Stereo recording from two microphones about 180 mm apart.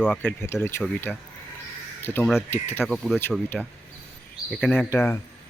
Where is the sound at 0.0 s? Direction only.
10° left (ahead or behind).